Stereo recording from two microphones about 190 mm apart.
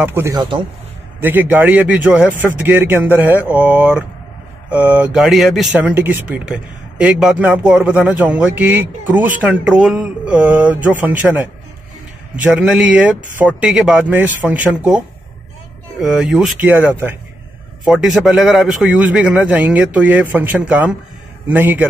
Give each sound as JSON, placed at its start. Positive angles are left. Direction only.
{"t": 0.0, "sound": "speech", "side_deg": -10}
{"t": 0.4, "sound": "speech", "side_deg": -25}
{"t": 1.2, "sound": "speech", "side_deg": -10}